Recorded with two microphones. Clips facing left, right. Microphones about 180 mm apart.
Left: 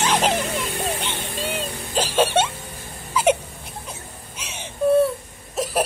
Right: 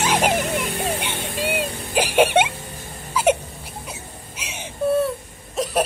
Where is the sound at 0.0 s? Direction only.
10° right (ahead or behind).